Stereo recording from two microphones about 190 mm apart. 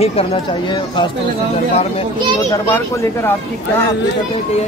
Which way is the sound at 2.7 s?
10° left (ahead or behind).